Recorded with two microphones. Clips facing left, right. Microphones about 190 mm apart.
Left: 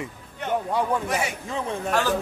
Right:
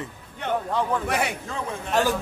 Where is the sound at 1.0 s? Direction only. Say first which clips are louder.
Right 1 dB; 60° right (ahead or behind).